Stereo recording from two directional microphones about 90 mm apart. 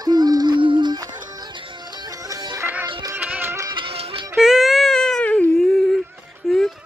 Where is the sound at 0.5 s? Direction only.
65° right (ahead or behind).